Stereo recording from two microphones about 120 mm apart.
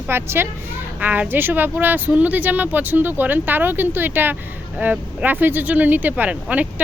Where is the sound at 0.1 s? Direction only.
20° right (ahead or behind).